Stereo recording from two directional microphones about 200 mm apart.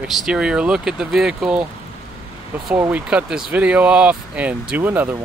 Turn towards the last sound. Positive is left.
turn(degrees=-10)  # may be behind; listen again after turning